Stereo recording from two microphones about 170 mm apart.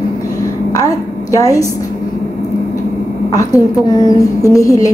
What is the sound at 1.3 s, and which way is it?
Speech, 20° left (ahead or behind).